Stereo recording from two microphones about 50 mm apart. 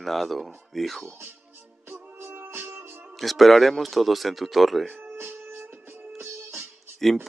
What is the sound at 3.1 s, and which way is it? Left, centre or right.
Speech, centre.